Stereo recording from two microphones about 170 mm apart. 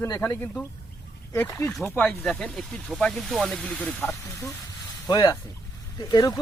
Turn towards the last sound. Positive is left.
turn(degrees=20)  # may be behind; listen again after turning